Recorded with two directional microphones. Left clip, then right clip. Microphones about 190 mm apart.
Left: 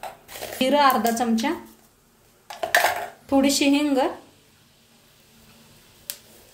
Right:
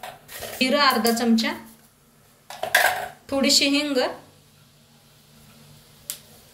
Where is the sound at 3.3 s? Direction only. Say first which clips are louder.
Even; 40° left (ahead or behind).